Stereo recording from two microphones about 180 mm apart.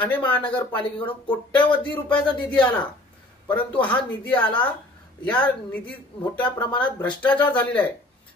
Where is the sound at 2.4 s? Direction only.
5° left (ahead or behind).